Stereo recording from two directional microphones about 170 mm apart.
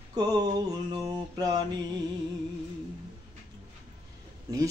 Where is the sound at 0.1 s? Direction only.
20° right (ahead or behind).